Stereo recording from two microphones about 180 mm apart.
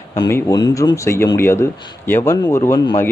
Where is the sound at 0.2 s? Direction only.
20° left (ahead or behind).